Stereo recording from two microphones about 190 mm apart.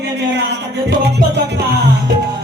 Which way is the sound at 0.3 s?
65° right (ahead or behind).